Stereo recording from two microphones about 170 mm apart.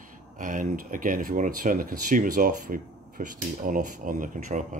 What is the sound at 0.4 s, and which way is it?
Speech, 50° right (ahead or behind).